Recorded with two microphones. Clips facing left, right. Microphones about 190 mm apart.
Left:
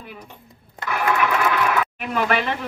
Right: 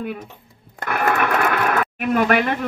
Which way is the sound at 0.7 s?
55° right (ahead or behind).